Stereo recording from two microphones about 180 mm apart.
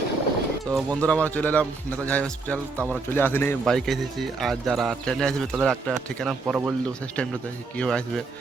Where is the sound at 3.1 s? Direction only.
10° left (ahead or behind).